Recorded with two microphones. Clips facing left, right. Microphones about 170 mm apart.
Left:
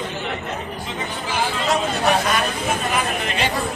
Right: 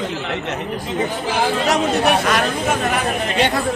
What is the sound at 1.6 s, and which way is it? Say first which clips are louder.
Speech: right 1 dB; 70° right (ahead or behind).